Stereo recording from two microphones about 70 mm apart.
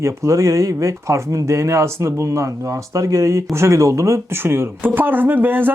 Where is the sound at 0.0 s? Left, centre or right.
Right.